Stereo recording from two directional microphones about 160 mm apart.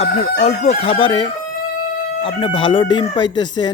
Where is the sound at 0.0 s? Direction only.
45° left (ahead or behind).